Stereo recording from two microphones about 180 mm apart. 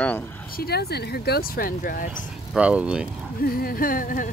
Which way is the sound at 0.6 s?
60° left (ahead or behind).